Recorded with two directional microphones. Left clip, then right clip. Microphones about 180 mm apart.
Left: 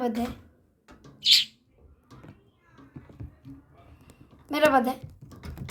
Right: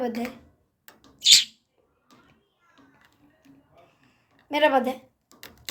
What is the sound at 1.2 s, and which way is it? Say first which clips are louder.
Bird: right 3 dB; 25° right (ahead or behind).